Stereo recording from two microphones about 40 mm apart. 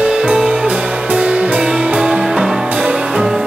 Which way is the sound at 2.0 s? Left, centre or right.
Centre.